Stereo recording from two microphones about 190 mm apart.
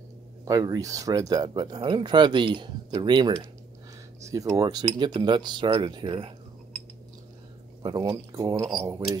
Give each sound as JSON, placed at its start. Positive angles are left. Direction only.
{"t": 0.5, "sound": "speech", "side_deg": -20}
{"t": 7.8, "sound": "speech", "side_deg": -20}